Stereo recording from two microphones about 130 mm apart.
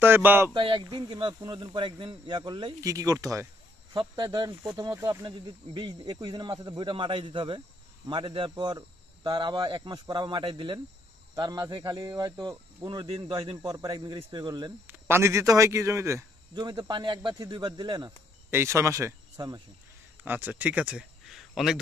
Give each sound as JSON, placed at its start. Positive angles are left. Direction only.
{"t": 0.0, "sound": "speech", "side_deg": -15}
{"t": 0.6, "sound": "speech", "side_deg": -40}
{"t": 2.8, "sound": "speech", "side_deg": -25}
{"t": 5.2, "sound": "speech", "side_deg": -35}
{"t": 14.9, "sound": "speech", "side_deg": -20}
{"t": 16.5, "sound": "speech", "side_deg": -35}
{"t": 18.5, "sound": "speech", "side_deg": -20}
{"t": 20.2, "sound": "speech", "side_deg": -15}